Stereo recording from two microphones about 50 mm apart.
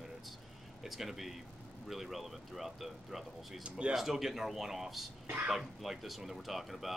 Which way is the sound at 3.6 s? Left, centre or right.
Right.